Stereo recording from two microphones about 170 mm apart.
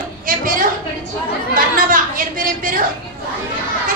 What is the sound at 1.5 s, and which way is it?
Speech, 55° right (ahead or behind).